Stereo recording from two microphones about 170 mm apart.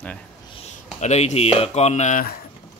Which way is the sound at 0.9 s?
45° left (ahead or behind).